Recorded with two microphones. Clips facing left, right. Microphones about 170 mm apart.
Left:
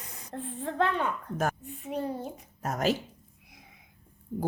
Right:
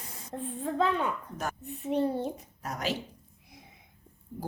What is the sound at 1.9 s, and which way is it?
Printer, 30° right (ahead or behind).